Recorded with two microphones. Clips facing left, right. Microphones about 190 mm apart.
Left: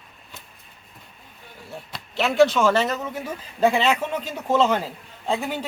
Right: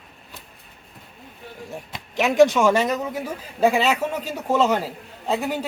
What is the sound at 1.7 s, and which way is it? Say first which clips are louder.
Speech: left 2 dB; 15° right (ahead or behind).